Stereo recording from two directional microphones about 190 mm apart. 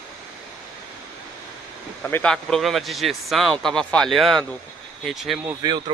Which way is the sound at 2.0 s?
10° left (ahead or behind).